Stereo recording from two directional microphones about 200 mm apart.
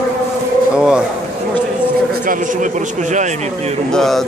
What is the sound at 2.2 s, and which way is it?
A man's voice, 40° right (ahead or behind).